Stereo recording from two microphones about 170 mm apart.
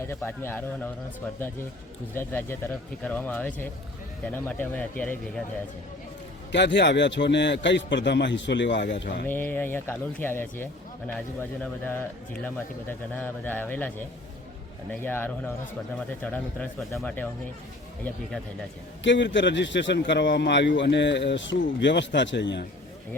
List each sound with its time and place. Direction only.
0.1 s speech: 15° left (ahead or behind)
2.1 s speech: 10° left (ahead or behind)
6.5 s a man's voice: 90° left
9.2 s speech: 10° left (ahead or behind)
19.0 s a man's voice: 90° left